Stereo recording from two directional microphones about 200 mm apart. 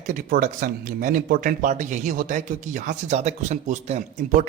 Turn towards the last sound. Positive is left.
turn(degrees=-40)  # may be behind; listen again after turning